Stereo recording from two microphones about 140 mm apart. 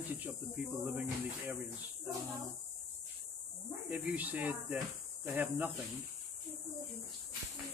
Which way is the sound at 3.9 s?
10° right (ahead or behind).